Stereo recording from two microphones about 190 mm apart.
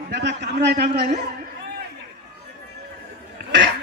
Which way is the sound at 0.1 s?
65° right (ahead or behind).